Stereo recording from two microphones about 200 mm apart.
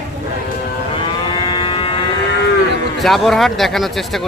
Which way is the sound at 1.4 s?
25° left (ahead or behind).